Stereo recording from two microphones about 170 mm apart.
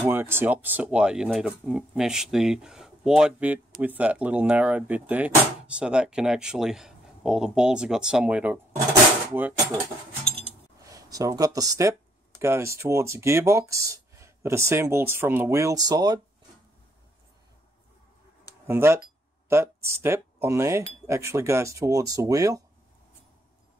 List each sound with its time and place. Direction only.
0.0 s speech: 10° right (ahead or behind)
10.8 s speech: 20° right (ahead or behind)
18.7 s speech: 15° right (ahead or behind)